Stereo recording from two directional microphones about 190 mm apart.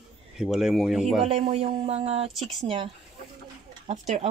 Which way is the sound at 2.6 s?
30° right (ahead or behind).